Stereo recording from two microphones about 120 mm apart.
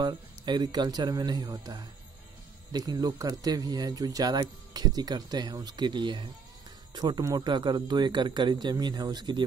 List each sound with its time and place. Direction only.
0.0 s speech: 40° right (ahead or behind)